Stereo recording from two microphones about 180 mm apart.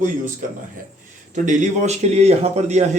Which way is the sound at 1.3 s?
45° right (ahead or behind).